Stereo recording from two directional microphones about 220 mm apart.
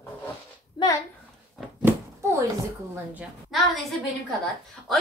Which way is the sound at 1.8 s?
10° right (ahead or behind).